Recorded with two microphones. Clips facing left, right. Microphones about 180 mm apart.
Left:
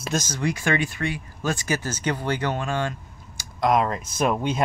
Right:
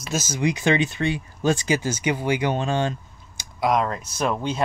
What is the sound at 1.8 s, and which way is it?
Speech, 10° right (ahead or behind).